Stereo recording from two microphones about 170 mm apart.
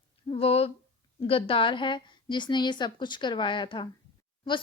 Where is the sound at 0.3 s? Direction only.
35° left (ahead or behind).